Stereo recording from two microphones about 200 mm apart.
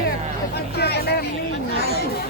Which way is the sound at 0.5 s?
55° left (ahead or behind).